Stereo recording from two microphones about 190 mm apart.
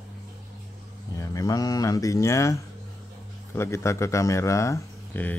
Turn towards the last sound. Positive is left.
turn(degrees=10)  # may be behind; listen again after turning